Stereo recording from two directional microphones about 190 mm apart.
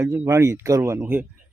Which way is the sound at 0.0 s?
15° right (ahead or behind).